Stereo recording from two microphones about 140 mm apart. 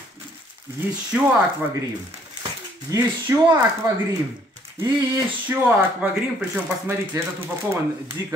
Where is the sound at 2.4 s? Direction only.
30° right (ahead or behind).